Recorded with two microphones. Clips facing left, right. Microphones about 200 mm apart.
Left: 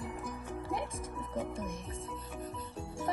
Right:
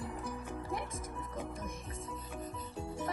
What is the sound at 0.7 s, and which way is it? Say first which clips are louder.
Music: left 5 dB; 30° left (ahead or behind).